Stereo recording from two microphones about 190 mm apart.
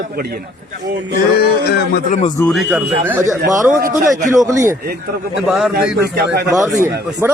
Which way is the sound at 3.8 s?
45° right (ahead or behind).